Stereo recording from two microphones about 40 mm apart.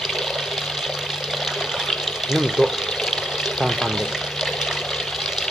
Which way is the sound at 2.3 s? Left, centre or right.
Centre.